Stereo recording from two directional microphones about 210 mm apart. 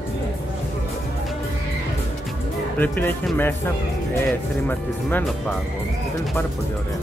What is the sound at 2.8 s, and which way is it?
Speech, 10° left (ahead or behind).